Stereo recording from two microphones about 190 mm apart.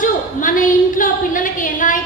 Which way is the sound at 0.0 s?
45° left (ahead or behind).